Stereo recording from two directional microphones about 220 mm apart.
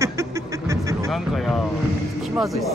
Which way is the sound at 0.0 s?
15° right (ahead or behind).